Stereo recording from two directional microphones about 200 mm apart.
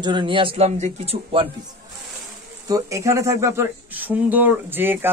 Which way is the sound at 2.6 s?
15° right (ahead or behind).